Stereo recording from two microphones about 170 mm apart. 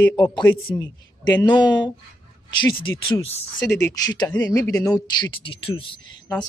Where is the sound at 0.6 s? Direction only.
25° left (ahead or behind).